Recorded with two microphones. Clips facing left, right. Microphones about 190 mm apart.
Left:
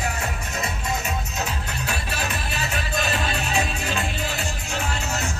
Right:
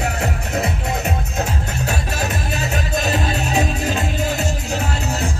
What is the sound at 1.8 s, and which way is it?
Music, 45° right (ahead or behind).